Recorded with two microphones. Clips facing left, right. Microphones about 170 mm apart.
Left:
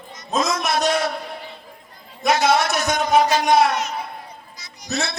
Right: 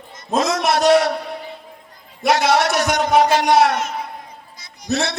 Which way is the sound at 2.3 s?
70° right (ahead or behind).